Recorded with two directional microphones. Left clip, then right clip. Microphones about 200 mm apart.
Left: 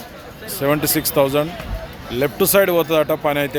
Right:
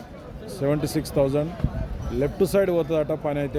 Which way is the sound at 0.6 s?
5° left (ahead or behind).